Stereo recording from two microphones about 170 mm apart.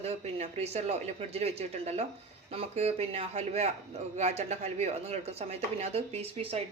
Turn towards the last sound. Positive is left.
turn(degrees=-35)  # may be behind; listen again after turning